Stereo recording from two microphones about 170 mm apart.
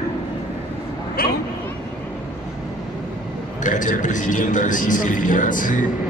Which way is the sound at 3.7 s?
50° left (ahead or behind).